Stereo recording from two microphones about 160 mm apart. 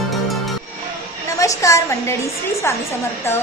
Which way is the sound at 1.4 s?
20° left (ahead or behind).